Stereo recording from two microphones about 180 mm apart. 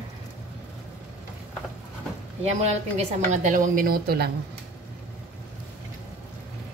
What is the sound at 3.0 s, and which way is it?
A woman's voice, 45° right (ahead or behind).